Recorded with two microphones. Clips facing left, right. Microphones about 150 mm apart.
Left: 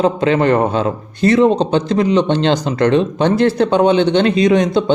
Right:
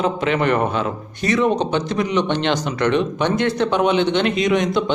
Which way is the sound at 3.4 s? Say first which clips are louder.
Left 6 dB; 30° left (ahead or behind).